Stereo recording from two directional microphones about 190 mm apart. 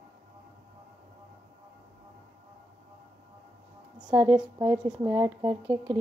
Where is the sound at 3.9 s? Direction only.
10° right (ahead or behind).